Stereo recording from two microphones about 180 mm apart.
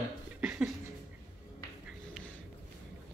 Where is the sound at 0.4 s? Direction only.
5° right (ahead or behind).